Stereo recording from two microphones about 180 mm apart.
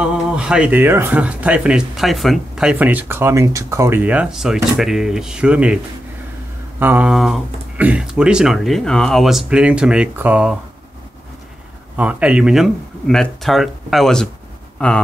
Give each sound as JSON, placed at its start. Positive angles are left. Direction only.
{"t": 0.0, "sound": "speech", "side_deg": -5}
{"t": 6.8, "sound": "speech", "side_deg": -10}
{"t": 12.0, "sound": "speech", "side_deg": -5}